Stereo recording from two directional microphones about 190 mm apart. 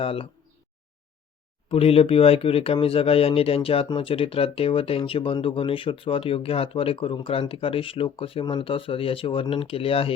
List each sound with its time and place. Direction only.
0.0 s speech: 30° left (ahead or behind)
1.7 s speech: 30° left (ahead or behind)